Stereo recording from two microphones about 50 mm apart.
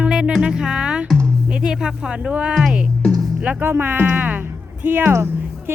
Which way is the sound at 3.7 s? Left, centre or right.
Right.